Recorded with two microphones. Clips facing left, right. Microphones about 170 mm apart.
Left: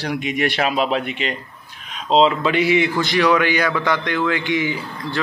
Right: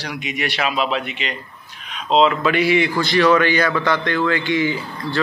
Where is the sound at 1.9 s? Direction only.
35° left (ahead or behind).